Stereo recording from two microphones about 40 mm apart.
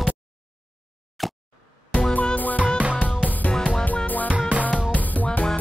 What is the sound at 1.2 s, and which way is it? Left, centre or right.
Plop, centre.